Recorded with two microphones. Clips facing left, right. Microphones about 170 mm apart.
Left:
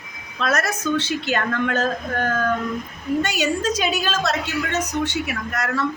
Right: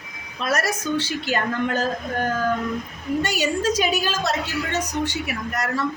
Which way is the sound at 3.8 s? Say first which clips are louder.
Even; 10° right (ahead or behind).